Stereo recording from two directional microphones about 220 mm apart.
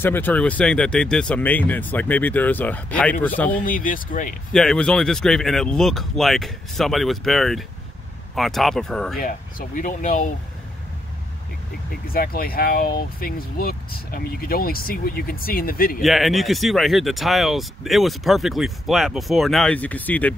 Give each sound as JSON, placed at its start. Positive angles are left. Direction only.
{"t": 0.0, "sound": "speech", "side_deg": 10}
{"t": 3.6, "sound": "speech", "side_deg": 40}
{"t": 4.5, "sound": "speech", "side_deg": 0}
{"t": 9.2, "sound": "speech", "side_deg": 40}
{"t": 12.1, "sound": "speech", "side_deg": 40}
{"t": 16.0, "sound": "speech", "side_deg": 0}